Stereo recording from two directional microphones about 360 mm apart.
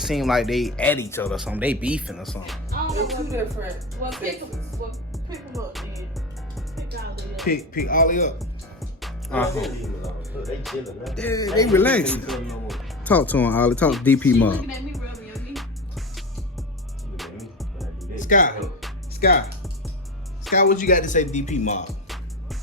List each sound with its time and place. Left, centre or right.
0.0 s speech: centre
4.8 s music: right
5.1 s music: centre
7.4 s speech: left
9.0 s speech: centre
17.2 s music: centre
18.2 s music: left
18.6 s music: centre
19.2 s speech: left
20.5 s speech: left